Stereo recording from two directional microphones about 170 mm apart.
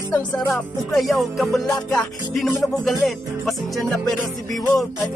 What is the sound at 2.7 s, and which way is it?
Music, centre (ahead or behind).